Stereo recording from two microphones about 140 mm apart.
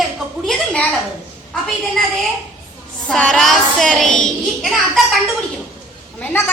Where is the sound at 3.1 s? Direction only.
5° left (ahead or behind).